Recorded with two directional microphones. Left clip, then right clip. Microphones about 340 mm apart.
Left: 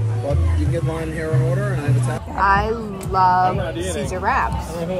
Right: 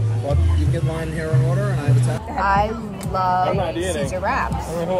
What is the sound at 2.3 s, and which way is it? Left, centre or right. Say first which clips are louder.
Speech: left 2 dB; centre.